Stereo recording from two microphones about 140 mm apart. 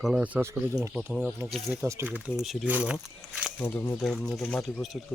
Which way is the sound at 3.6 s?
15° left (ahead or behind).